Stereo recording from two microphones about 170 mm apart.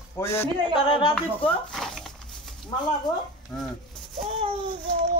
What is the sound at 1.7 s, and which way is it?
Speech, centre (ahead or behind).